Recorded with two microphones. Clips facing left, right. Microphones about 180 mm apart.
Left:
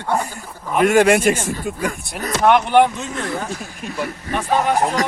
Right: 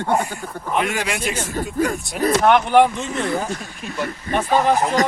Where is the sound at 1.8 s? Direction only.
45° right (ahead or behind).